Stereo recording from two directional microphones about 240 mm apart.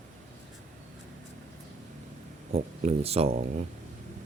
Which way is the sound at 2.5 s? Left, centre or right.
Right.